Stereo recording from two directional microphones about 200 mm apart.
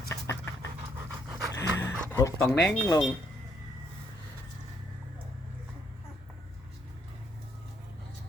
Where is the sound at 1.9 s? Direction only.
10° left (ahead or behind).